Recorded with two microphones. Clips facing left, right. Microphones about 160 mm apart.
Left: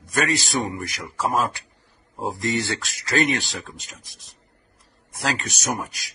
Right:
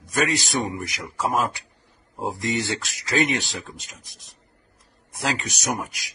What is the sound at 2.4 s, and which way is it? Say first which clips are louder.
Speech: left 1 dB; 20° right (ahead or behind).